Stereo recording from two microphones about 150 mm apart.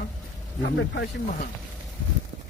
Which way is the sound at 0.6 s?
65° left (ahead or behind).